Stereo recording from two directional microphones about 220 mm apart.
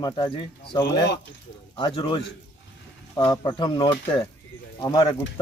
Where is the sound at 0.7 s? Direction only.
20° left (ahead or behind).